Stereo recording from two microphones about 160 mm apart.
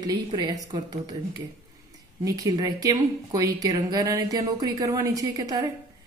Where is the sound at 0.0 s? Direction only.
25° right (ahead or behind).